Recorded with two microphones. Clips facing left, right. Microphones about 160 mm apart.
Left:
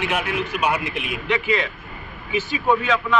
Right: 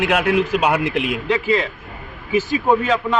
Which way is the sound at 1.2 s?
35° right (ahead or behind).